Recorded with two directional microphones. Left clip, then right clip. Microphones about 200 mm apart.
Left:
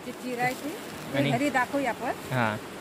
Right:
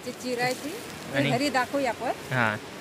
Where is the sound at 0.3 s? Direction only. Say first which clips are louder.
Right 1 dB; 40° right (ahead or behind).